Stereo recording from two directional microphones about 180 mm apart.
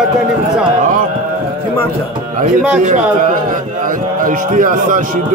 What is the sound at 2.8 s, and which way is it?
A man's voice, 45° right (ahead or behind).